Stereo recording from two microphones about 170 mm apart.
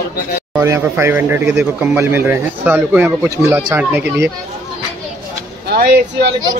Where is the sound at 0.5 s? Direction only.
15° right (ahead or behind).